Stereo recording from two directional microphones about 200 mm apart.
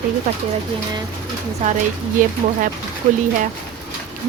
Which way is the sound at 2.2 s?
40° right (ahead or behind).